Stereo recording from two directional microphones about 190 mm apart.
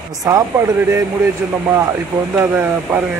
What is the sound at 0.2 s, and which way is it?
Speech, 15° right (ahead or behind).